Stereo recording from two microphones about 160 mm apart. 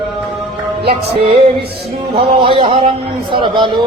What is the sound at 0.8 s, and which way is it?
A man's voice, 35° right (ahead or behind).